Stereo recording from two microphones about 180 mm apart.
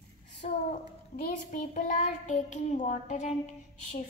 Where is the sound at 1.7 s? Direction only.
40° left (ahead or behind).